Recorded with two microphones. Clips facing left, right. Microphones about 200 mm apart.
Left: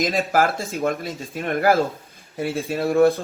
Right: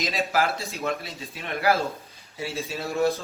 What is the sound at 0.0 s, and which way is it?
A man's voice, 50° left (ahead or behind).